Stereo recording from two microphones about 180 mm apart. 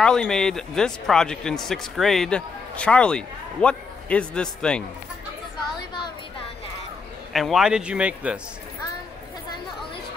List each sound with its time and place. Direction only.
0.0 s a man's voice: 5° left (ahead or behind)
5.8 s a sound: 25° left (ahead or behind)
7.3 s a man's voice: centre (ahead or behind)